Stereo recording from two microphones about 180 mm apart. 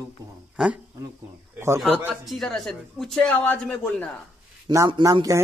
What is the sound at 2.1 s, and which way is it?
Speech, centre (ahead or behind).